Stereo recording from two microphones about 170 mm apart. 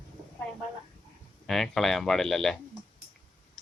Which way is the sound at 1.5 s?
Centre (ahead or behind).